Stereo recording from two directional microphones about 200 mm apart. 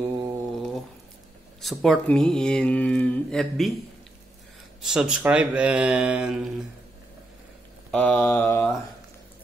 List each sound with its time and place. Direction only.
0.5 s a sound: 5° left (ahead or behind)
1.6 s speech: centre (ahead or behind)
4.8 s speech: 5° right (ahead or behind)
7.9 s mantra: 5° left (ahead or behind)